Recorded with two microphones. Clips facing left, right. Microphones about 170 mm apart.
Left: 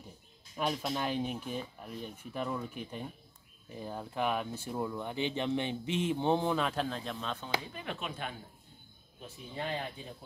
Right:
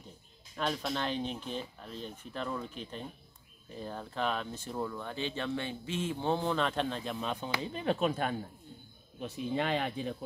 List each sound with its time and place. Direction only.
0.6 s speech: 10° left (ahead or behind)
7.2 s speech: 15° right (ahead or behind)
7.6 s speech: 30° right (ahead or behind)
9.2 s speech: 90° right